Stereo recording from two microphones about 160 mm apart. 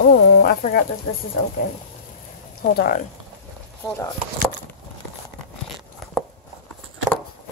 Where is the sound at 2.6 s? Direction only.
75° left (ahead or behind).